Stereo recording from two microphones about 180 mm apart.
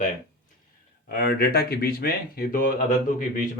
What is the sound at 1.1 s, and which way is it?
Speech, 55° left (ahead or behind).